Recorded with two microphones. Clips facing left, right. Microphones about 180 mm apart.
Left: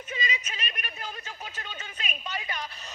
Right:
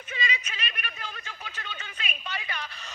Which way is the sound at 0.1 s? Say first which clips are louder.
Right 1 dB; 40° left (ahead or behind).